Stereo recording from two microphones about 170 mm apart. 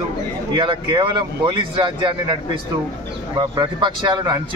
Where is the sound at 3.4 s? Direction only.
25° right (ahead or behind).